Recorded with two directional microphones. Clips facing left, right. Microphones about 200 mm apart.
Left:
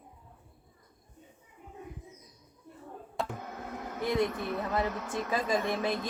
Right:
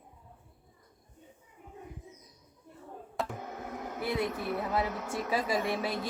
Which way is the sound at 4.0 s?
5° right (ahead or behind).